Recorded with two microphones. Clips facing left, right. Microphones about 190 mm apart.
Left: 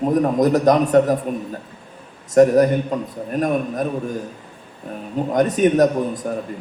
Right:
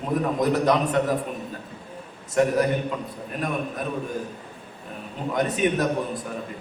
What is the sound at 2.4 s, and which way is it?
A man's voice, 45° left (ahead or behind).